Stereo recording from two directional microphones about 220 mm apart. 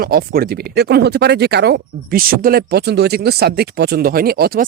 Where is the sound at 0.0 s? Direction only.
45° right (ahead or behind).